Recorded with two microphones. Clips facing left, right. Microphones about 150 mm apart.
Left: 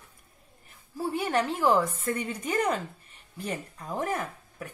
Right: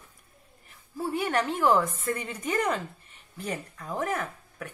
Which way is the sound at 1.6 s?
5° left (ahead or behind).